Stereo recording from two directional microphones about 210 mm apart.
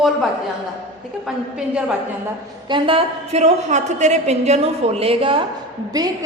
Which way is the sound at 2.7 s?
25° right (ahead or behind).